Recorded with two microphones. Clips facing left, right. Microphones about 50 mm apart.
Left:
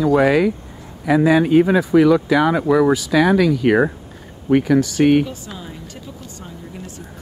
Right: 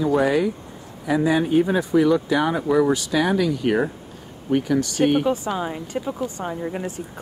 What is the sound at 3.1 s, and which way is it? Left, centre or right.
Speech, left.